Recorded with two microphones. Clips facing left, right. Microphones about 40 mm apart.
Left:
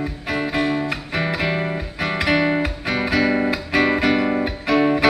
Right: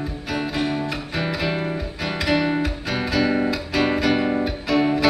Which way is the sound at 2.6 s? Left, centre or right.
Left.